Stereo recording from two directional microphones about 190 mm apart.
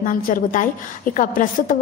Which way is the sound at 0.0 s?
45° left (ahead or behind).